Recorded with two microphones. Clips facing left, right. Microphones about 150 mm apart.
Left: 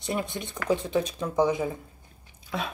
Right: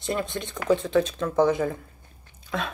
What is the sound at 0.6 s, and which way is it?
Speech, 15° left (ahead or behind).